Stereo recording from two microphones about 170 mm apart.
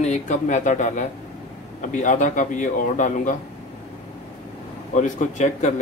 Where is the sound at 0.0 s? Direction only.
45° left (ahead or behind).